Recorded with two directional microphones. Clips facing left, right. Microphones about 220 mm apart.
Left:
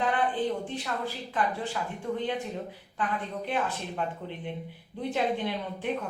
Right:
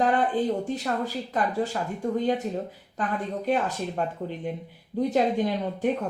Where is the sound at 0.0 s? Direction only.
40° right (ahead or behind).